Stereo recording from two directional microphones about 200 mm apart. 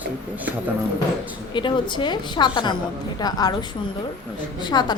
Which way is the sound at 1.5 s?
25° left (ahead or behind).